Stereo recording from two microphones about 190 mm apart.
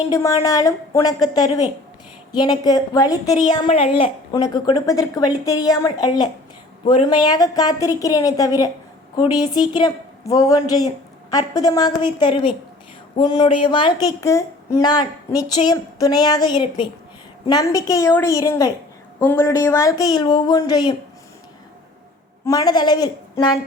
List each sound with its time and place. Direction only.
0.1 s a woman's voice: 15° left (ahead or behind)
3.7 s a woman's voice: 30° left (ahead or behind)
22.4 s speech: 20° left (ahead or behind)